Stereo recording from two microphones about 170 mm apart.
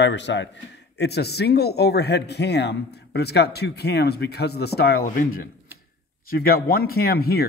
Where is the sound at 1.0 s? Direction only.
70° left (ahead or behind).